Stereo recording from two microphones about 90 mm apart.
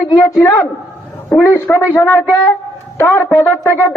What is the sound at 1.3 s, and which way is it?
A man's voice, 30° left (ahead or behind).